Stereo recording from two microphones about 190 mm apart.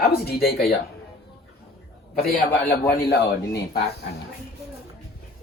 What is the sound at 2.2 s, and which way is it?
Speech, 55° left (ahead or behind).